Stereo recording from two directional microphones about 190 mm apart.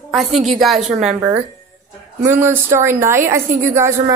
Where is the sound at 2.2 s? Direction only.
10° right (ahead or behind).